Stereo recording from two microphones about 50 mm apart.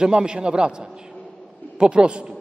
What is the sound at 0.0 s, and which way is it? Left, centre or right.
A man's voice, centre.